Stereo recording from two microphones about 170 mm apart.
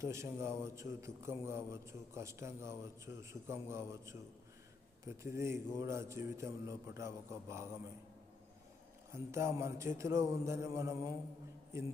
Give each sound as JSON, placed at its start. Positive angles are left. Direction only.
{"t": 0.0, "sound": "a man's voice", "side_deg": -15}
{"t": 9.1, "sound": "a man's voice", "side_deg": -15}